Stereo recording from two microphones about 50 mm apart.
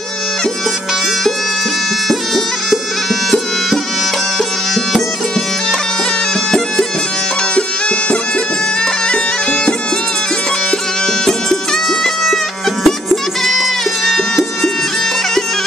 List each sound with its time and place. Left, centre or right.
2.0 s music: centre
9.1 s bagpipes: centre
12.8 s music: centre